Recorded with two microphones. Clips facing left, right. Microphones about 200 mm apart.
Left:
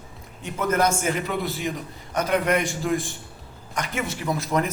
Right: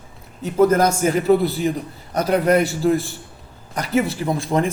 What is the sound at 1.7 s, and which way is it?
Speech, 35° right (ahead or behind).